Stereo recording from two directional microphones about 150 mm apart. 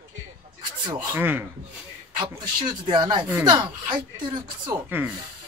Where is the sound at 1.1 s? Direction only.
15° right (ahead or behind).